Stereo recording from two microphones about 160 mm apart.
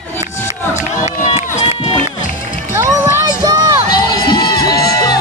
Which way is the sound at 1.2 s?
45° left (ahead or behind).